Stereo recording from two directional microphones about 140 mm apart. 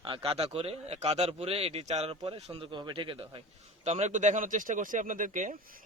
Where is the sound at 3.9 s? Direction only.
55° right (ahead or behind).